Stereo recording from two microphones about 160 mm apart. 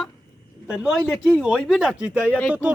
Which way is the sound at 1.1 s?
Centre (ahead or behind).